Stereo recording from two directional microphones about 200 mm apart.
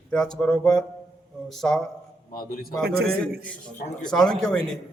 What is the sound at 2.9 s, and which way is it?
Speech, 50° right (ahead or behind).